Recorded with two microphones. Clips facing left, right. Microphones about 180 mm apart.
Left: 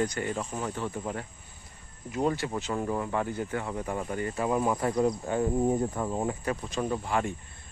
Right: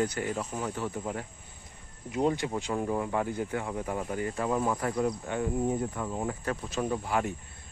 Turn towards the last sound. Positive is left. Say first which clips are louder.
# even
turn(degrees=-5)  # may be behind; listen again after turning